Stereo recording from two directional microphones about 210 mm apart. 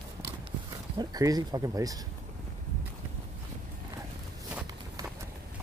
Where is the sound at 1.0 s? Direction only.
15° right (ahead or behind).